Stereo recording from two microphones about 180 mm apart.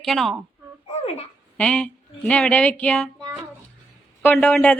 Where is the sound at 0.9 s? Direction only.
35° left (ahead or behind).